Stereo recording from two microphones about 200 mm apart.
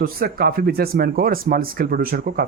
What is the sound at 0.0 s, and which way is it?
Speech, 50° right (ahead or behind).